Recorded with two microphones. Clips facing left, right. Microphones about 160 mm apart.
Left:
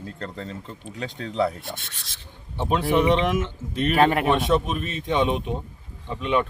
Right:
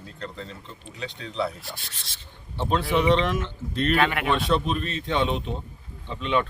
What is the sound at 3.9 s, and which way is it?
Speech, 40° left (ahead or behind).